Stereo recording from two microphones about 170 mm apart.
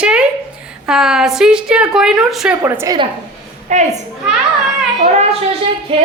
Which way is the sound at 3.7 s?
45° right (ahead or behind).